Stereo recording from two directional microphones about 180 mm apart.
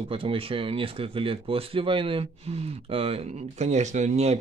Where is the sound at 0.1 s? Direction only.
30° right (ahead or behind).